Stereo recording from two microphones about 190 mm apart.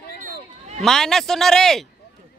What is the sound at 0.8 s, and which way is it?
Speech, centre (ahead or behind).